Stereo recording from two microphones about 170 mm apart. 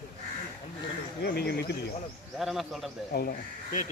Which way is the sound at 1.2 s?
70° left (ahead or behind).